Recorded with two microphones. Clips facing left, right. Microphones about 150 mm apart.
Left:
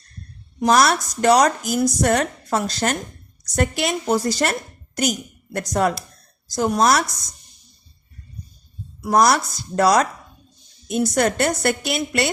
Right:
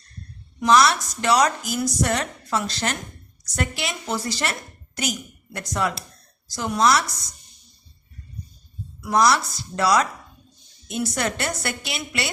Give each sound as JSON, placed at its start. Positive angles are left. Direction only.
{"t": 0.6, "sound": "a woman's voice", "side_deg": 45}
{"t": 9.0, "sound": "speech", "side_deg": 45}